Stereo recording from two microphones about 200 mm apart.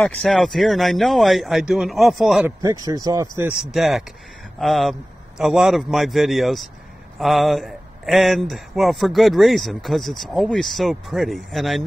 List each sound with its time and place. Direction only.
0.2 s speech: centre (ahead or behind)
2.6 s speech: 15° right (ahead or behind)
3.7 s speech: centre (ahead or behind)